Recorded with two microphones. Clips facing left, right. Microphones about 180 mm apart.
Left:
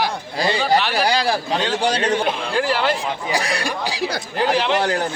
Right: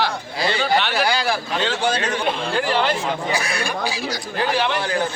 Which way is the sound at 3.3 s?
35° left (ahead or behind).